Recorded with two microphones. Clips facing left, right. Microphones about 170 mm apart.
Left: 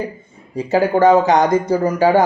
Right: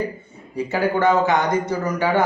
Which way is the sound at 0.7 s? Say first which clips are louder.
Left 6 dB; 40° left (ahead or behind).